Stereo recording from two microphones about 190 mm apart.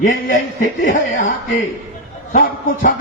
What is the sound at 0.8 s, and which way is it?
A man's voice, 45° left (ahead or behind).